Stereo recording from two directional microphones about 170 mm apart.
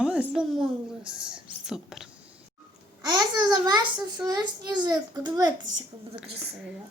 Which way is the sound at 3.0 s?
25° right (ahead or behind).